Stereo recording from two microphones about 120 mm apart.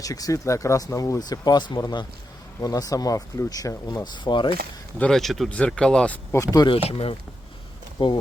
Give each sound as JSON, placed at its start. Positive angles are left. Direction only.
{"t": 0.0, "sound": "speech", "side_deg": 30}
{"t": 4.9, "sound": "speech", "side_deg": 5}
{"t": 6.3, "sound": "speech", "side_deg": 30}
{"t": 6.8, "sound": "speech", "side_deg": 50}
{"t": 7.9, "sound": "speech", "side_deg": 40}